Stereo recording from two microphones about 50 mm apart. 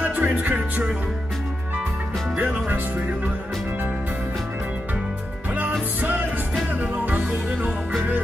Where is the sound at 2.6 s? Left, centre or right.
Right.